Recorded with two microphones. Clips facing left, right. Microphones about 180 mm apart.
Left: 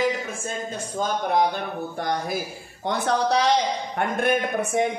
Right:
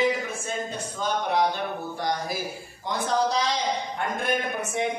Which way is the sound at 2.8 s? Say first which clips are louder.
Left 2 dB; 65° left (ahead or behind).